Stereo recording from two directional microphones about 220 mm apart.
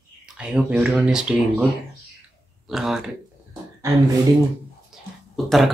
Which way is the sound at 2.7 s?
Centre (ahead or behind).